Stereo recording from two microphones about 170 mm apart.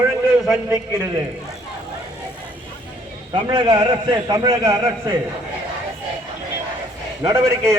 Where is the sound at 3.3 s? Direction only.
30° right (ahead or behind).